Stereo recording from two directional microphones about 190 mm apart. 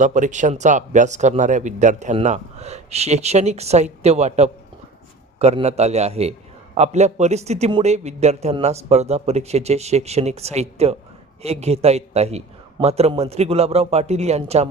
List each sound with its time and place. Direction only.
0.0 s speech: 40° right (ahead or behind)